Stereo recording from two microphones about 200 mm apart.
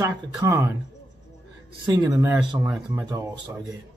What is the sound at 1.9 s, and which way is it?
A man's voice, 15° right (ahead or behind).